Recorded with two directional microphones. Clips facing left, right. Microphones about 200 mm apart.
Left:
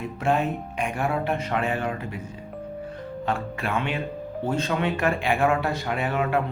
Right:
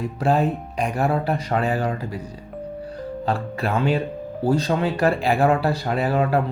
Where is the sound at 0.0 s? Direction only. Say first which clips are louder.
Right 4 dB; 35° right (ahead or behind).